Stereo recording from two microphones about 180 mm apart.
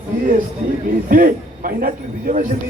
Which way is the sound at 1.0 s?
50° right (ahead or behind).